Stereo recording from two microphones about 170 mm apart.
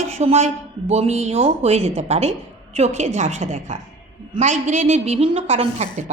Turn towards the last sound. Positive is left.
turn(degrees=-40)  # may be behind; listen again after turning